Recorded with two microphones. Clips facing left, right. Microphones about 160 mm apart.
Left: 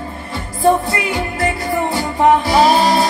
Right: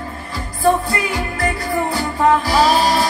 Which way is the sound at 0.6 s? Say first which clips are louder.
Left 2 dB; 25° left (ahead or behind).